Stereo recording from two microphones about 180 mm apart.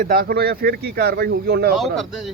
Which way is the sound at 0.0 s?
55° right (ahead or behind).